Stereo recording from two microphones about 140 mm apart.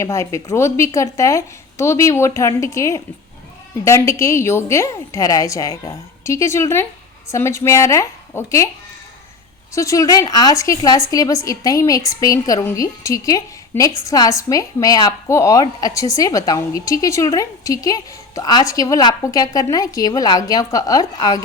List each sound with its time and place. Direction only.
0.0 s a woman's voice: 20° left (ahead or behind)
9.7 s a woman's voice: 25° left (ahead or behind)